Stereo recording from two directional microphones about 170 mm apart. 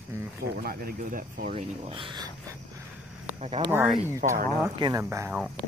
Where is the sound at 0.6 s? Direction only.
60° right (ahead or behind).